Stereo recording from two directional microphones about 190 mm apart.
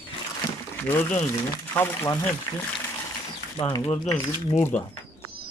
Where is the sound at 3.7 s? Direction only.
25° left (ahead or behind).